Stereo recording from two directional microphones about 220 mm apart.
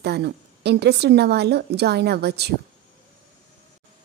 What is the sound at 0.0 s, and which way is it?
A woman's voice, 50° right (ahead or behind).